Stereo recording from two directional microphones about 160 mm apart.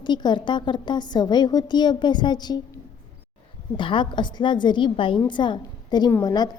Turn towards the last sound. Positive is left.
turn(degrees=25)  # may be behind; listen again after turning